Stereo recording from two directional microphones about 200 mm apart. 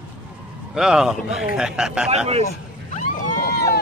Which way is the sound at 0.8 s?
5° right (ahead or behind).